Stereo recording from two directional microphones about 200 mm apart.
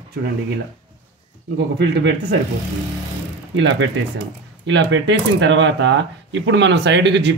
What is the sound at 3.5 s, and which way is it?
Speech, 65° right (ahead or behind).